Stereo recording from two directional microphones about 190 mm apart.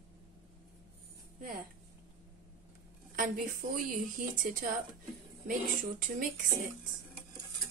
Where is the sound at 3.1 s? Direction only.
45° right (ahead or behind).